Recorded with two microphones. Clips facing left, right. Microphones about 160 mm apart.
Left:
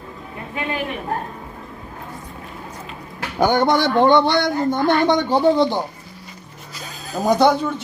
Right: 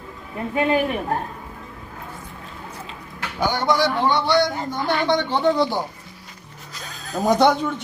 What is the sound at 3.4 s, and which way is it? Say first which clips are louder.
Speech: left 4 dB; 50° left (ahead or behind).